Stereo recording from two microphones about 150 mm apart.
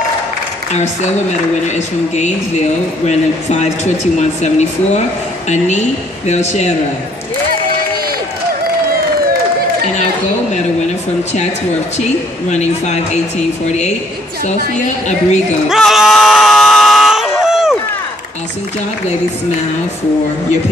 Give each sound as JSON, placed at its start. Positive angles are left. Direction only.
{"t": 1.7, "sound": "speech", "side_deg": 50}
{"t": 12.0, "sound": "speech", "side_deg": 50}
{"t": 15.7, "sound": "screaming", "side_deg": 0}